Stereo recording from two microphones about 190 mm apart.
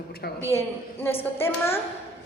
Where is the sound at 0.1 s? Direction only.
55° left (ahead or behind).